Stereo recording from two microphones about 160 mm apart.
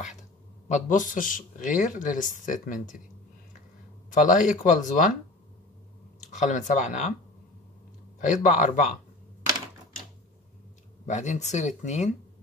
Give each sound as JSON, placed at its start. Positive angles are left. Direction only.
{"t": 0.7, "sound": "speech", "side_deg": 50}
{"t": 4.1, "sound": "speech", "side_deg": 50}
{"t": 6.3, "sound": "speech", "side_deg": 50}
{"t": 8.2, "sound": "speech", "side_deg": 50}
{"t": 11.1, "sound": "speech", "side_deg": 45}